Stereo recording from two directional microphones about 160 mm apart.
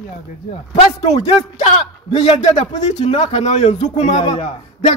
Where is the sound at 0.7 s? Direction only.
40° left (ahead or behind).